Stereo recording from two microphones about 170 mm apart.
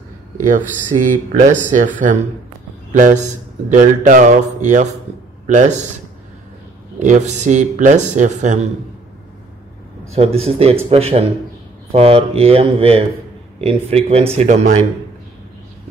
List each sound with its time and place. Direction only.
0.5 s speech: 50° right (ahead or behind)
2.9 s a man's voice: 50° right (ahead or behind)
7.0 s speech: 45° right (ahead or behind)
10.1 s speech: 35° right (ahead or behind)